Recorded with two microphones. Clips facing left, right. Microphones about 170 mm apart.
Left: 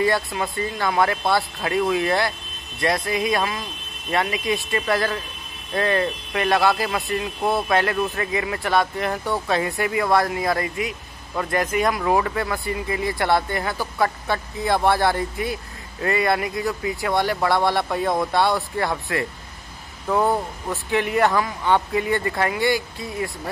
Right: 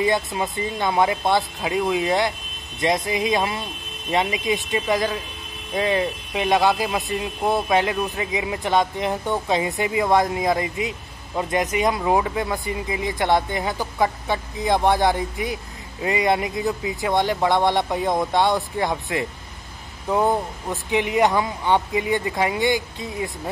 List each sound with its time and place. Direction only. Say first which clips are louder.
0.0 s speech: even; 20° right (ahead or behind)